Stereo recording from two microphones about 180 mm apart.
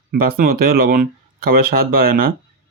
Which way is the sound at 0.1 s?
55° right (ahead or behind).